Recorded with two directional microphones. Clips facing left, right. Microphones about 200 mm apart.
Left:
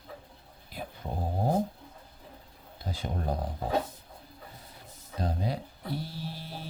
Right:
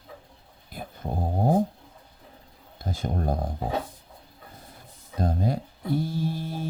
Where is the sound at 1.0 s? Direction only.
45° right (ahead or behind).